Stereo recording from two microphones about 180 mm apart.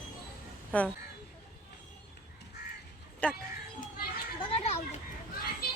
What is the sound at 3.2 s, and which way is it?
Speech, 5° left (ahead or behind).